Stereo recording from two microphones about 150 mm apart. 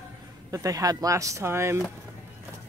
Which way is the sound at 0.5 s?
20° right (ahead or behind).